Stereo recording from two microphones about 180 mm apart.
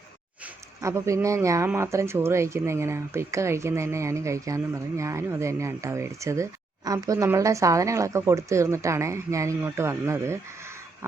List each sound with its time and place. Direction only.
0.4 s speech: 15° right (ahead or behind)